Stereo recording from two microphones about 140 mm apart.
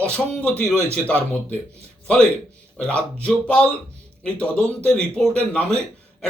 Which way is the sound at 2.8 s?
10° left (ahead or behind).